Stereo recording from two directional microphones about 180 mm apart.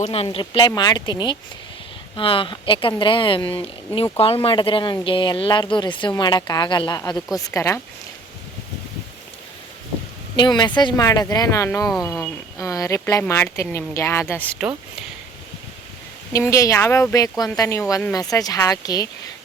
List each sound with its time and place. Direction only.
0.0 s speech: 35° left (ahead or behind); by 7.8 s 15° left (ahead or behind)
10.3 s speech: 25° left (ahead or behind)
16.3 s speech: 15° left (ahead or behind)